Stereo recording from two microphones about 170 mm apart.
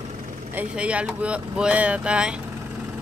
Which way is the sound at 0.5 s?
5° right (ahead or behind).